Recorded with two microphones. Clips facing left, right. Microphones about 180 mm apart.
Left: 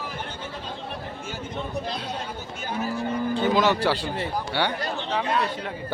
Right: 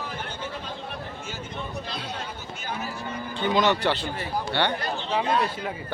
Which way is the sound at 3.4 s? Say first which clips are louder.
Even; 5° left (ahead or behind).